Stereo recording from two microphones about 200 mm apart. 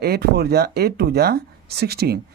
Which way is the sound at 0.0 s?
50° right (ahead or behind).